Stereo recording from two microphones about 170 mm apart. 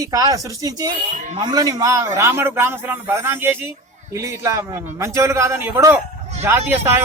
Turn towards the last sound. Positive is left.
turn(degrees=-15)  # may be behind; listen again after turning